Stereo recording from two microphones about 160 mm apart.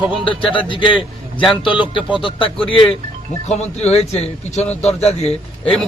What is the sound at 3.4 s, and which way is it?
A man's voice, 45° left (ahead or behind).